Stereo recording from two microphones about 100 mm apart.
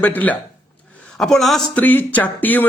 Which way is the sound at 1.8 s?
15° left (ahead or behind).